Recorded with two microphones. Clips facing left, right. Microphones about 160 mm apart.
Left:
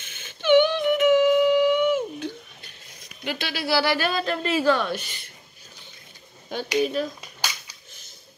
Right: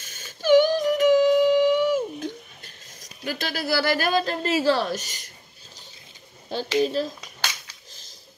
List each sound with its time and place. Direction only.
0.0 s music: 40° right (ahead or behind)
3.0 s speech: 40° right (ahead or behind)
6.8 s speech: 30° right (ahead or behind)